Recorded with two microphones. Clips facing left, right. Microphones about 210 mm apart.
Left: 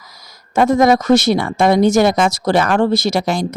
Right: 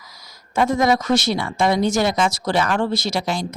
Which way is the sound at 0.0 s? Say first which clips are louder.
Left 2 dB; 45° left (ahead or behind).